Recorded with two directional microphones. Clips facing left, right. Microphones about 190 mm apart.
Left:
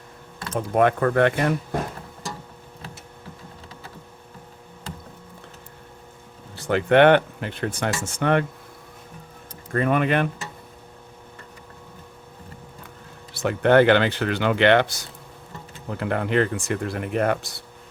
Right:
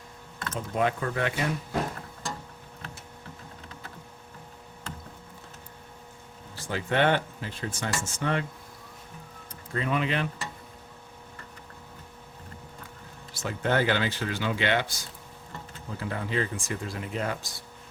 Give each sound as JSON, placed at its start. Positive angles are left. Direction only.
{"t": 0.5, "sound": "speech", "side_deg": 60}
{"t": 6.6, "sound": "speech", "side_deg": 65}
{"t": 9.7, "sound": "speech", "side_deg": 55}
{"t": 13.3, "sound": "speech", "side_deg": 65}